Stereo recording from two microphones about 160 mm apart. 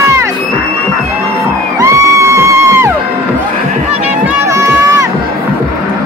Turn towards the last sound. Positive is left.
turn(degrees=-20)  # may be behind; listen again after turning